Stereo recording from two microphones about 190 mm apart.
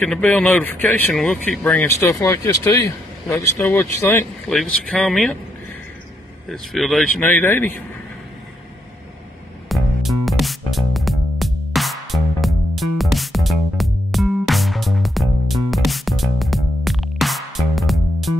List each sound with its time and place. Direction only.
0.0 s speech: 10° left (ahead or behind)
3.5 s speech: 5° left (ahead or behind)
6.5 s speech: centre (ahead or behind)
9.7 s music: centre (ahead or behind)